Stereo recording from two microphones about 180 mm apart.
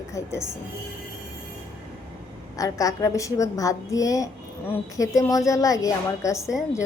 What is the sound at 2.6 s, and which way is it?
A woman's voice, 20° left (ahead or behind).